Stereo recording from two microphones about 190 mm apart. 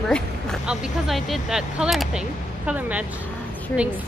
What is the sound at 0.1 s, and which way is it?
A woman's voice, centre (ahead or behind).